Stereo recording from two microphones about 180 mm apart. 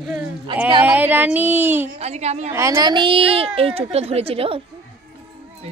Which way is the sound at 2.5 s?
20° right (ahead or behind).